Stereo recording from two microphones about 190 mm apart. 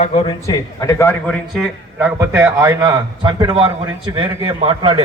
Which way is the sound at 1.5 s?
5° right (ahead or behind).